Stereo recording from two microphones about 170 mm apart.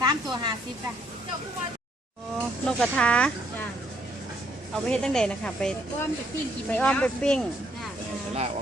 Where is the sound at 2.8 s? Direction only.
5° left (ahead or behind).